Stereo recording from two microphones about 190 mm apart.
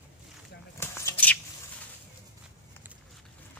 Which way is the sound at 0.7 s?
15° left (ahead or behind).